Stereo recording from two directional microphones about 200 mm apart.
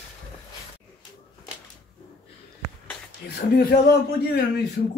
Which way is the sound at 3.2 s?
50° left (ahead or behind).